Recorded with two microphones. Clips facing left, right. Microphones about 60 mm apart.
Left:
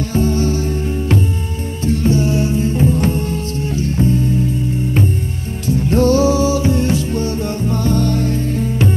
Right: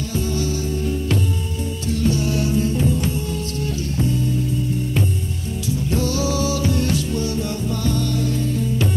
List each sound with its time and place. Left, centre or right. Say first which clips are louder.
0.1 s music: left 7 dB; left
5.7 s music: left 9 dB; left